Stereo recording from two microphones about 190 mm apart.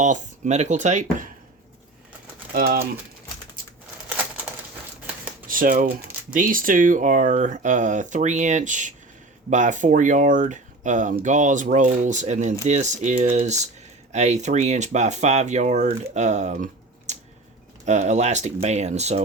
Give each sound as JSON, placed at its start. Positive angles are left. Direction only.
{"t": 0.0, "sound": "speech", "side_deg": -40}
{"t": 2.5, "sound": "speech", "side_deg": -50}
{"t": 5.5, "sound": "speech", "side_deg": -45}
{"t": 17.1, "sound": "a sound", "side_deg": -35}
{"t": 17.8, "sound": "speech", "side_deg": -40}